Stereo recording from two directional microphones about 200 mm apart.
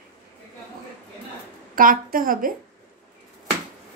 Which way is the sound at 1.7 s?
45° right (ahead or behind).